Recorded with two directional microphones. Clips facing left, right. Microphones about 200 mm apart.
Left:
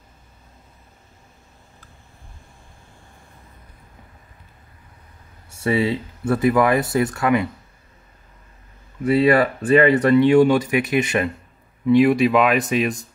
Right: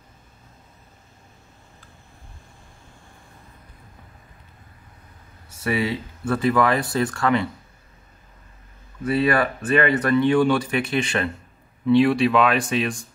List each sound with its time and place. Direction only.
5.6 s speech: 25° left (ahead or behind)
9.0 s speech: 25° left (ahead or behind)